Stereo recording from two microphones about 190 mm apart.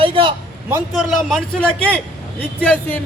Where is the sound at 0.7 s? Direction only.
Centre (ahead or behind).